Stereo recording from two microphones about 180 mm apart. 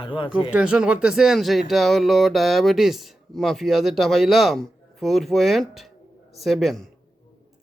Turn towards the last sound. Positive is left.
turn(degrees=0)  # may be behind; listen again after turning